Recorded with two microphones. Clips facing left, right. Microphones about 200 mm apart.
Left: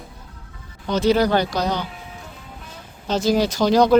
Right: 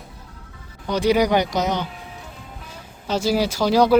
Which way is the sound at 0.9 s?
15° right (ahead or behind).